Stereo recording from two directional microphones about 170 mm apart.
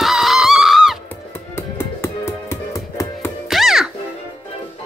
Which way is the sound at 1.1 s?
15° left (ahead or behind).